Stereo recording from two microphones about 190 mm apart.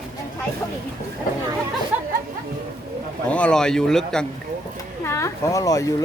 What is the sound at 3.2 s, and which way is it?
A man's voice, 5° left (ahead or behind).